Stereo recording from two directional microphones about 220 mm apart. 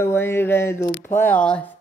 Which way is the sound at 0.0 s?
10° left (ahead or behind).